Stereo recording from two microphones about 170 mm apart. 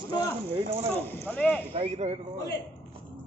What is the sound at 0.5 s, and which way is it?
Speech, 35° right (ahead or behind).